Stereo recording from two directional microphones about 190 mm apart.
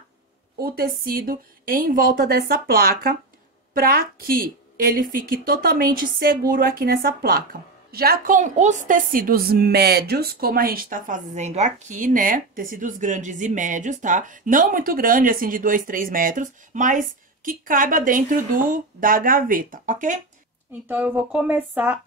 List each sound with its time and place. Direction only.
0.6 s a woman's voice: 50° right (ahead or behind)
20.9 s speech: 10° right (ahead or behind)